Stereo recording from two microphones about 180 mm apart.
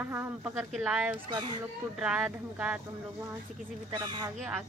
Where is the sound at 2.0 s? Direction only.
5° right (ahead or behind).